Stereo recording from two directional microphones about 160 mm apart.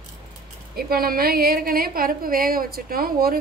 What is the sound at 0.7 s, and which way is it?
A woman's voice, 70° right (ahead or behind).